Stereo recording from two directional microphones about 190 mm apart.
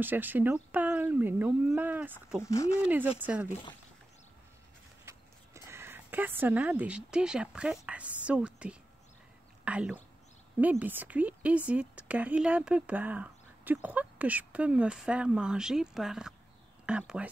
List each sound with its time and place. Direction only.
0.0 s a woman's voice: 10° right (ahead or behind)
2.4 s speech: 15° left (ahead or behind)
2.8 s a woman's voice: 10° right (ahead or behind)
5.0 s a woman's voice: 15° right (ahead or behind)